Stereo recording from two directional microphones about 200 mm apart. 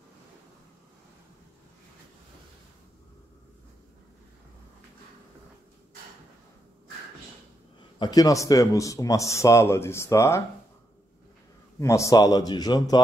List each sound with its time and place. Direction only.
8.0 s speech: 20° left (ahead or behind)
11.8 s a man's voice: 15° left (ahead or behind)